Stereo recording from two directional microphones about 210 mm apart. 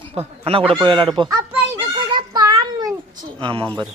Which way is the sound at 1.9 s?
20° right (ahead or behind).